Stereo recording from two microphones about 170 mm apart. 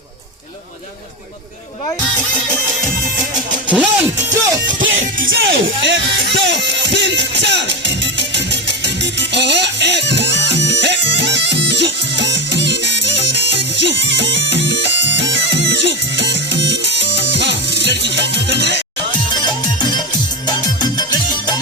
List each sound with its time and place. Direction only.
2.0 s music: 10° left (ahead or behind)
3.7 s music: 10° right (ahead or behind)
5.3 s music: 90° right
9.3 s music: 90° right
21.1 s music: 25° left (ahead or behind)